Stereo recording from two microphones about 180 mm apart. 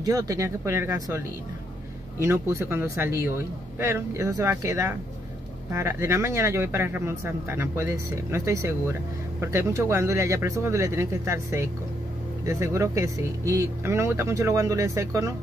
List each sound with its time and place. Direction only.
0.0 s speech: 20° right (ahead or behind)